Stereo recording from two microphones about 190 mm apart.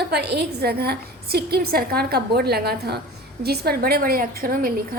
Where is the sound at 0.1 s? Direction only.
60° right (ahead or behind).